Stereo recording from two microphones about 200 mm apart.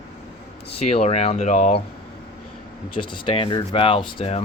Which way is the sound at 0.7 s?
30° left (ahead or behind).